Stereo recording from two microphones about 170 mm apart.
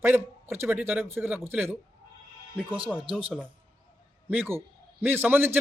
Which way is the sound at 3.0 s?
30° right (ahead or behind).